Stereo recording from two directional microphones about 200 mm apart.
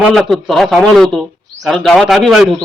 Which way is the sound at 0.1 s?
Centre (ahead or behind).